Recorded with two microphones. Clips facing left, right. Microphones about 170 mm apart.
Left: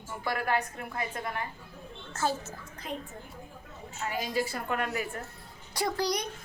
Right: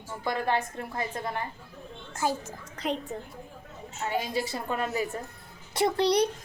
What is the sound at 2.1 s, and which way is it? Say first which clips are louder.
Speech: right 1 dB; 15° right (ahead or behind).